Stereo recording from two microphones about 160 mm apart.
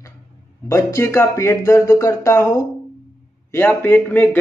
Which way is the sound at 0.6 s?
20° left (ahead or behind).